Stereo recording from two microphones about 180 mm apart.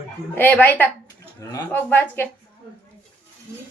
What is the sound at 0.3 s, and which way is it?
Speech, 10° left (ahead or behind).